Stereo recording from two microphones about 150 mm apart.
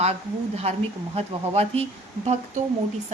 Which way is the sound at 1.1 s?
45° right (ahead or behind).